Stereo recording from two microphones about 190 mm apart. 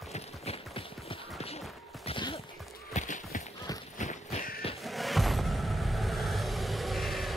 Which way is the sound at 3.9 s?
40° left (ahead or behind).